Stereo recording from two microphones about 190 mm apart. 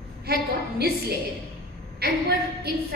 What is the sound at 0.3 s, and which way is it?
Speech, 55° right (ahead or behind).